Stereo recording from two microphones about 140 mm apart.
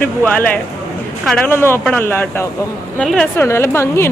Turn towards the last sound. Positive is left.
turn(degrees=20)  # may be behind; listen again after turning